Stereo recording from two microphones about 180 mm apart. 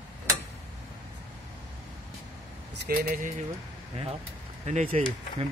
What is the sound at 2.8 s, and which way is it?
Speech, 50° right (ahead or behind).